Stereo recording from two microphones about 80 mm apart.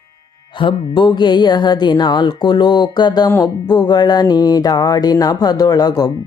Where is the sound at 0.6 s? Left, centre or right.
Left.